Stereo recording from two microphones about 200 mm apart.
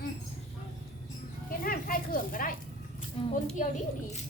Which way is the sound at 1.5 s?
45° left (ahead or behind).